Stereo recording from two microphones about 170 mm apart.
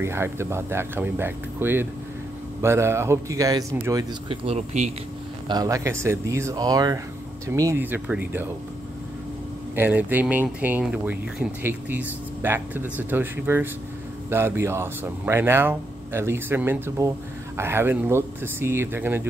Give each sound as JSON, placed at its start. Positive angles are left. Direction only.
{"t": 0.0, "sound": "speech", "side_deg": -15}
{"t": 4.3, "sound": "speech", "side_deg": -40}
{"t": 5.5, "sound": "speech", "side_deg": -20}
{"t": 9.8, "sound": "speech", "side_deg": -10}